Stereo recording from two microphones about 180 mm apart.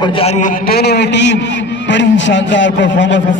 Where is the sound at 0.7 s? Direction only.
65° left (ahead or behind).